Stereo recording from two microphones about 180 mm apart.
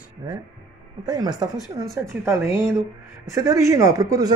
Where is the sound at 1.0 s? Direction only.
20° right (ahead or behind).